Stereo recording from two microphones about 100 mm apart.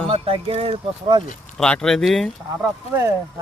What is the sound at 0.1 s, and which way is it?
Speech, 65° right (ahead or behind).